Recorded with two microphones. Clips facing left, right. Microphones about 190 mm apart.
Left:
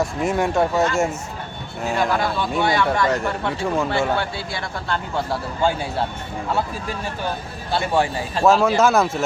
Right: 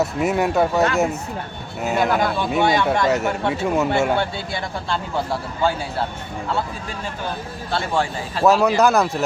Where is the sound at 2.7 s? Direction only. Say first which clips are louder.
Even; 20° right (ahead or behind).